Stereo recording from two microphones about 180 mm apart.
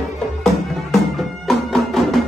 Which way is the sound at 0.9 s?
Centre (ahead or behind).